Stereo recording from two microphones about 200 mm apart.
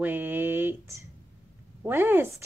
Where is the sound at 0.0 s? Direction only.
10° right (ahead or behind).